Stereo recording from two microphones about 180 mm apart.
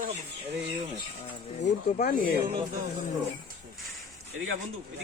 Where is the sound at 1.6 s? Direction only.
45° left (ahead or behind).